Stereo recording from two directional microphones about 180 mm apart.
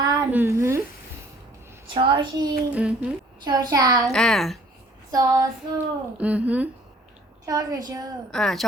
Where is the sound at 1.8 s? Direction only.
25° right (ahead or behind).